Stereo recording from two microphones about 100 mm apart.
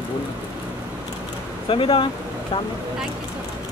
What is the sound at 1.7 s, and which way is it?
Speech, 60° left (ahead or behind).